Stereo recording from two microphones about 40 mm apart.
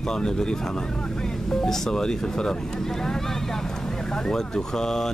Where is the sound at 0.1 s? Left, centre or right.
Centre.